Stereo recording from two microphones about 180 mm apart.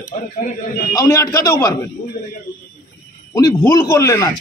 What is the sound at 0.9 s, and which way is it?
Speech, 15° left (ahead or behind).